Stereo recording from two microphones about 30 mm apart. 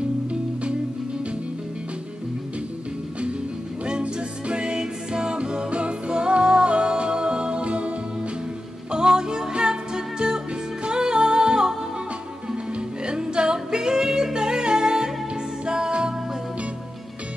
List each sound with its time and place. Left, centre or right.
4.0 s music: right
8.9 s music: right
13.0 s singing: right
15.6 s music: right